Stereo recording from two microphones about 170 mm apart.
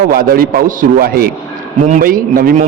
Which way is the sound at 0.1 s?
60° right (ahead or behind).